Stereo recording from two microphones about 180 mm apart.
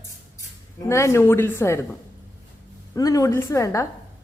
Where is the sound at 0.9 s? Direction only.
15° left (ahead or behind).